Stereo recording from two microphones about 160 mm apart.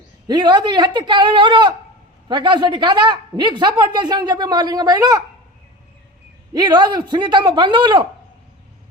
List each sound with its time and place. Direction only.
0.3 s a woman's voice: 30° right (ahead or behind)
6.5 s a woman's voice: 25° right (ahead or behind)